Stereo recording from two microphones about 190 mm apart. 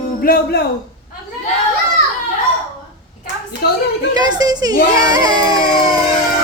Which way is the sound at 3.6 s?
55° left (ahead or behind).